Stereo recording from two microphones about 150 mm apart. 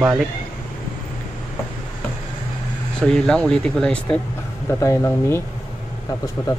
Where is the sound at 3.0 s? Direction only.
5° left (ahead or behind).